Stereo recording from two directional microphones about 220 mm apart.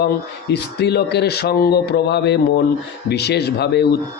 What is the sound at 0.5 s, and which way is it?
Speech, 50° left (ahead or behind).